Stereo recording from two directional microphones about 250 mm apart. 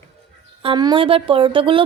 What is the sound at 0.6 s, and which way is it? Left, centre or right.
Speech, centre.